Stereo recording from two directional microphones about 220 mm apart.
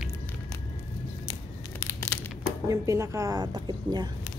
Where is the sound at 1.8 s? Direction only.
15° left (ahead or behind).